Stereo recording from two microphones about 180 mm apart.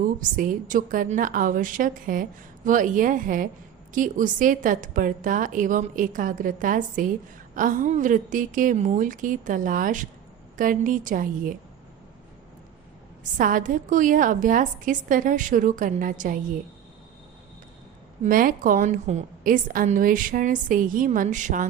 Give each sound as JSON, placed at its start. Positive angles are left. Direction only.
{"t": 0.2, "sound": "a woman's voice", "side_deg": -45}
{"t": 13.3, "sound": "a woman's voice", "side_deg": -45}
{"t": 18.2, "sound": "a woman's voice", "side_deg": -50}